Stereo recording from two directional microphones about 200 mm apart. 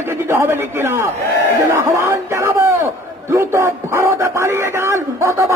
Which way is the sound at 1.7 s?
15° right (ahead or behind).